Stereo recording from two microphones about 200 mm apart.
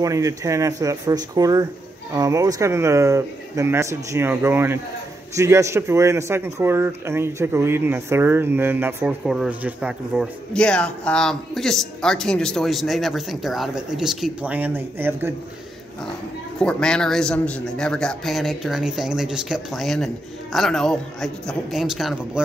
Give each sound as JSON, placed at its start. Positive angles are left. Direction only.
{"t": 0.0, "sound": "speech", "side_deg": -15}
{"t": 16.5, "sound": "a man's voice", "side_deg": 5}